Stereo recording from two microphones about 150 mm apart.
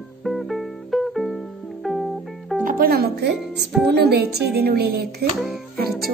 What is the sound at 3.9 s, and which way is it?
Music, 90° right.